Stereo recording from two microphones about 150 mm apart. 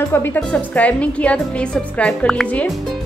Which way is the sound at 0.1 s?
10° left (ahead or behind).